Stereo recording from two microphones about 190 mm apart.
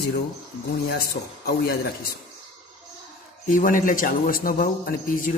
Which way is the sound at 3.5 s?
45° left (ahead or behind).